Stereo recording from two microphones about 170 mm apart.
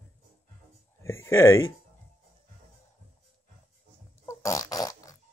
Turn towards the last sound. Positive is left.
turn(degrees=20)  # may be behind; listen again after turning